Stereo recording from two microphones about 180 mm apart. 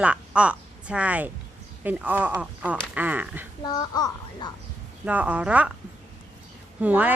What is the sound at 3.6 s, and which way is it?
Speech, 20° left (ahead or behind).